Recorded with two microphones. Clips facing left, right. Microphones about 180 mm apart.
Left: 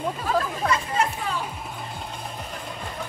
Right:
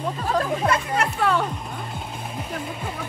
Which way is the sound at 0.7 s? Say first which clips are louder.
Right 2 dB; 65° right (ahead or behind).